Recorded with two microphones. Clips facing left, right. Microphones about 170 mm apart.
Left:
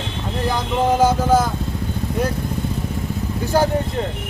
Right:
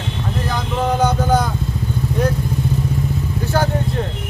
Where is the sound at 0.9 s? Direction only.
5° left (ahead or behind).